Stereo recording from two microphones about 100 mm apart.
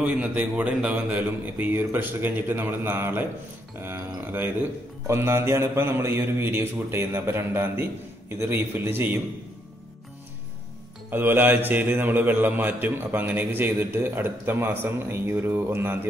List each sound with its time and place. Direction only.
0.0 s a man's voice: 15° right (ahead or behind)
11.1 s a man's voice: 20° right (ahead or behind)